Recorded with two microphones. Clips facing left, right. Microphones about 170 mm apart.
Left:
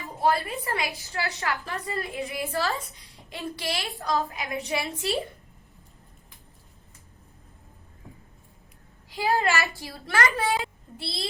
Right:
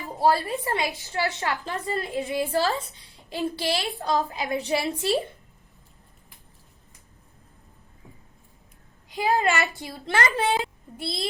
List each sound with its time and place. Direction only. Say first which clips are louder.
0.2 s a woman's voice: right 3 dB; 30° right (ahead or behind)
1.9 s a woman's voice: right 5 dB; 30° right (ahead or behind)
9.0 s a woman's voice: right 2 dB; 20° right (ahead or behind)